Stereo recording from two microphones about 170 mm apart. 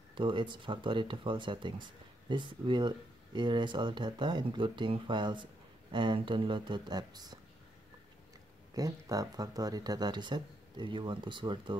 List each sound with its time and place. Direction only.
0.1 s speech: 30° right (ahead or behind)
8.7 s speech: 20° right (ahead or behind)